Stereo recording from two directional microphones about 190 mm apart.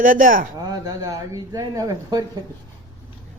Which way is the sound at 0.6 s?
20° right (ahead or behind).